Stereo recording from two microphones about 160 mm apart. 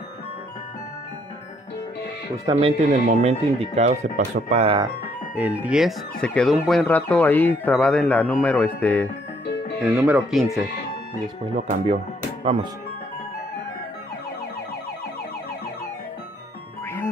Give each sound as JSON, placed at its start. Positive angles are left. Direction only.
{"t": 2.5, "sound": "speech", "side_deg": -25}
{"t": 2.9, "sound": "speech", "side_deg": -45}
{"t": 5.3, "sound": "speech", "side_deg": -10}
{"t": 9.9, "sound": "speech", "side_deg": -10}
{"t": 11.5, "sound": "speech", "side_deg": -45}